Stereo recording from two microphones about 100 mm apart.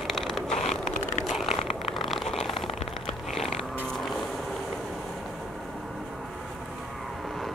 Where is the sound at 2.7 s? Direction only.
90° left.